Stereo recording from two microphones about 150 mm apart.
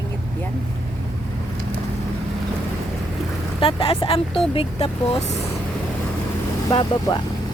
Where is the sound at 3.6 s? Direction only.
35° left (ahead or behind).